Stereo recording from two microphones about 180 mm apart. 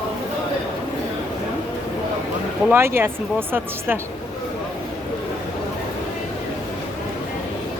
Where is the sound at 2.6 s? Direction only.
15° right (ahead or behind).